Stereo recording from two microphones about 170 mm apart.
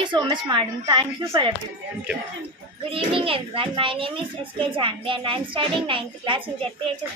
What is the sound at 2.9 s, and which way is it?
A child's voice, 30° right (ahead or behind).